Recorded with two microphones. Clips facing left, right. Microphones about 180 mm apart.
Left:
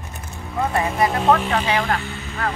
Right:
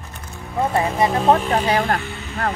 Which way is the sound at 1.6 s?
40° right (ahead or behind).